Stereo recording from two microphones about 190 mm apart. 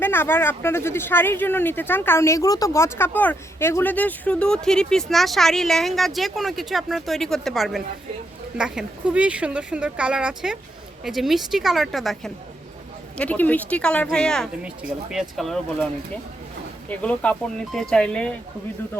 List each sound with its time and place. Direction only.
0.0 s speech: 10° left (ahead or behind)
16.9 s speech: 5° left (ahead or behind)